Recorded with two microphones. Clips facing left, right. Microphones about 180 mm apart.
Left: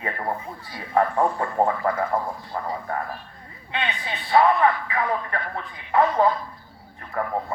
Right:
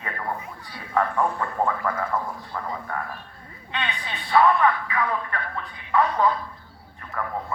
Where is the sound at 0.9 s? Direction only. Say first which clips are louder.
Left 3 dB; 35° left (ahead or behind).